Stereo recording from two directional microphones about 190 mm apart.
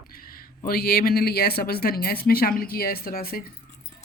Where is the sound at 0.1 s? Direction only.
50° left (ahead or behind).